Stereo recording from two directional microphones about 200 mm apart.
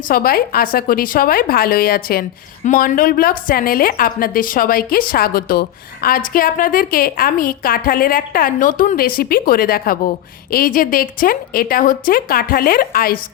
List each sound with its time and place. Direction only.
0.1 s a woman's voice: 50° left (ahead or behind)